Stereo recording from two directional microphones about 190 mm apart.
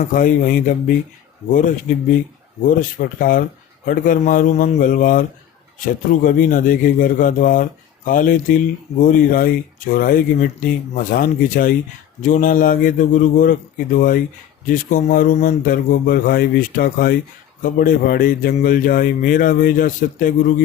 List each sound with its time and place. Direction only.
0.0 s speech: 45° left (ahead or behind)
3.2 s speech: 45° left (ahead or behind)